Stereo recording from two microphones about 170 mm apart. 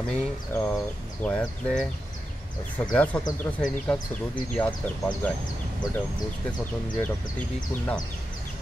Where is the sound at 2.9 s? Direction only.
5° left (ahead or behind).